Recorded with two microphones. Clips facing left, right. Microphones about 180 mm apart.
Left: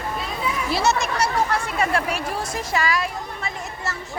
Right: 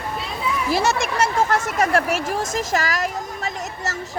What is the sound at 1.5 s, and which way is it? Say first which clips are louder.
Speech: right 3 dB; 45° right (ahead or behind).